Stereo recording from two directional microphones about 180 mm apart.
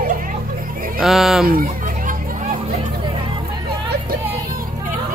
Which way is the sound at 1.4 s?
55° right (ahead or behind).